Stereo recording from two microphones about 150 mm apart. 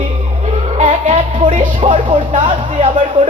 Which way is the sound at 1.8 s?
35° right (ahead or behind).